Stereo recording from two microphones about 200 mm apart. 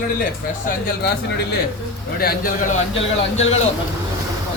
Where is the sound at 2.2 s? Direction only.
50° left (ahead or behind).